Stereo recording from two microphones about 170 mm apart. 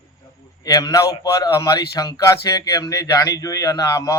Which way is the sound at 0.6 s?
20° left (ahead or behind).